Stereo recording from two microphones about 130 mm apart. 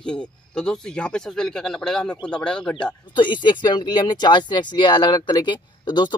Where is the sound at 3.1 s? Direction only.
35° left (ahead or behind).